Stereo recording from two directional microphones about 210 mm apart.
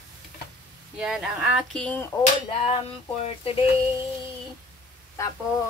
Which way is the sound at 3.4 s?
25° left (ahead or behind).